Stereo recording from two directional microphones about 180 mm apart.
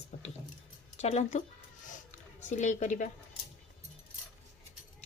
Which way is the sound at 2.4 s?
45° left (ahead or behind).